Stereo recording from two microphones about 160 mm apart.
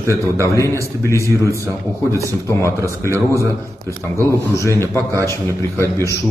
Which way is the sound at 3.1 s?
20° right (ahead or behind).